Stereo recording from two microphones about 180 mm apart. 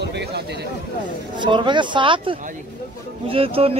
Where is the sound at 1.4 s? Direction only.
25° right (ahead or behind).